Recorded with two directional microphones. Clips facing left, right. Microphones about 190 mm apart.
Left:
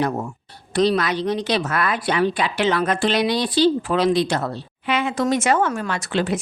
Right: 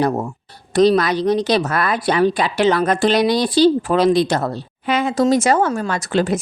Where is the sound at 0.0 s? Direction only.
35° right (ahead or behind).